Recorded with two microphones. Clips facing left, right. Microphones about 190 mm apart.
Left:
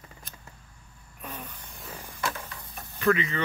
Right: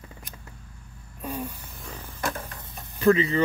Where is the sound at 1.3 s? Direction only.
10° right (ahead or behind).